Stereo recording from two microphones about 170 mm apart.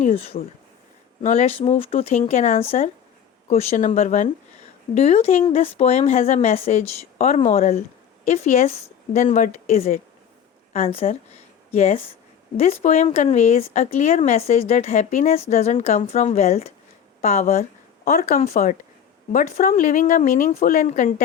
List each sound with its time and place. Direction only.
0.0 s a woman's voice: 40° left (ahead or behind)